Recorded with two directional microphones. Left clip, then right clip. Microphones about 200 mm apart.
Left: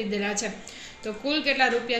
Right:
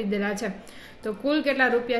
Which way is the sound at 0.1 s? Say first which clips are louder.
Right 1 dB; 50° right (ahead or behind).